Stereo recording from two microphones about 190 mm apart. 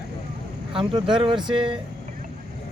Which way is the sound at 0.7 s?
25° right (ahead or behind).